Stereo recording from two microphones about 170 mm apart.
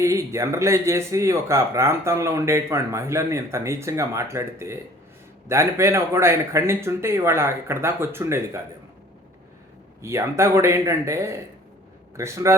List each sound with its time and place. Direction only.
0.0 s speech: 15° right (ahead or behind)
10.0 s speech: 15° right (ahead or behind)